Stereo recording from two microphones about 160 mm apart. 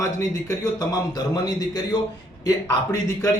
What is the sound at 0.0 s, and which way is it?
A man's voice, 20° left (ahead or behind).